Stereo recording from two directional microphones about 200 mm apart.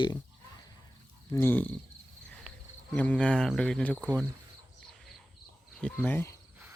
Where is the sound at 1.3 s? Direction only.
10° left (ahead or behind).